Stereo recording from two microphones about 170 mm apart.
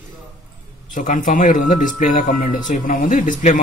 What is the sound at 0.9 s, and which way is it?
Speech, 50° left (ahead or behind).